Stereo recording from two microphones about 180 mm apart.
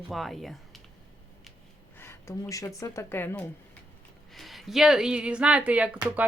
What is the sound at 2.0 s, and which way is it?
Speech, 15° left (ahead or behind).